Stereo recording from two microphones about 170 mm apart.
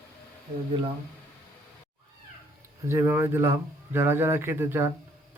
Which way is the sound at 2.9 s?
15° right (ahead or behind).